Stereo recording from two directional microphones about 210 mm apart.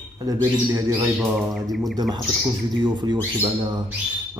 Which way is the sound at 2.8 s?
20° right (ahead or behind).